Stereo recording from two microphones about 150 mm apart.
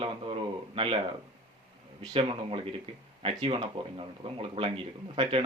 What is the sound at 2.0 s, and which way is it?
Speech, 35° right (ahead or behind).